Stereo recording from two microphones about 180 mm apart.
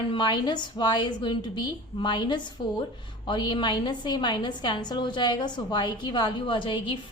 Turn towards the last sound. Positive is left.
turn(degrees=30)  # may be behind; listen again after turning